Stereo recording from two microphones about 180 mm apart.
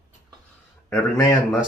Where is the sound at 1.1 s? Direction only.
20° left (ahead or behind).